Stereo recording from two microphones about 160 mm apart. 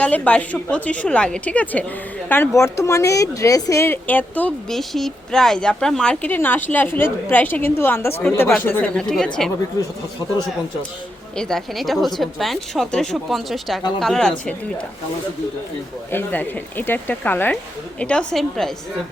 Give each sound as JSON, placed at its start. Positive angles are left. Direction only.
{"t": 0.0, "sound": "speech", "side_deg": 10}
{"t": 11.3, "sound": "speech", "side_deg": 5}
{"t": 16.1, "sound": "speech", "side_deg": 10}